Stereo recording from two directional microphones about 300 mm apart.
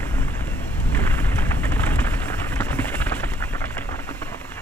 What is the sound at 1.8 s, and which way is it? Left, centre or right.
Rain, centre.